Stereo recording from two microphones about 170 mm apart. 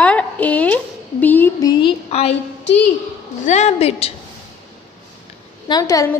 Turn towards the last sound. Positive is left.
turn(degrees=20)  # may be behind; listen again after turning